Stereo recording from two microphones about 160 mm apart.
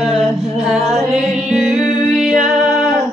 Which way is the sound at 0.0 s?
Centre (ahead or behind).